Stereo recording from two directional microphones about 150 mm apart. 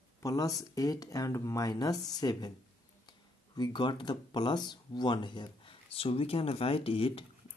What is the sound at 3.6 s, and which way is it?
Speech, 30° left (ahead or behind).